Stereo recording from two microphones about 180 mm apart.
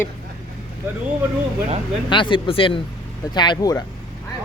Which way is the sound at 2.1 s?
25° left (ahead or behind).